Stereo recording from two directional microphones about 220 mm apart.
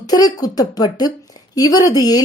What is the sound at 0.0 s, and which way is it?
A woman's voice, 15° left (ahead or behind).